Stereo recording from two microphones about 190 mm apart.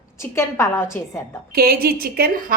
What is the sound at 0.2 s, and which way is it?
A woman's voice, 15° left (ahead or behind).